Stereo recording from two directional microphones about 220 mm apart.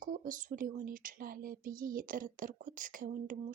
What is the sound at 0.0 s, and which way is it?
Speech, 35° right (ahead or behind).